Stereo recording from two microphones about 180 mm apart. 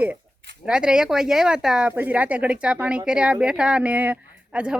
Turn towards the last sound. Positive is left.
turn(degrees=-5)  # may be behind; listen again after turning